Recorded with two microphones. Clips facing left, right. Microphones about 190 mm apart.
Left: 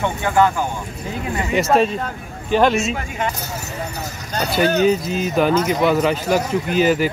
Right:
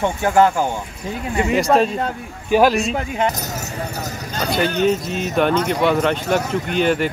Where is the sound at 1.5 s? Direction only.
Centre (ahead or behind).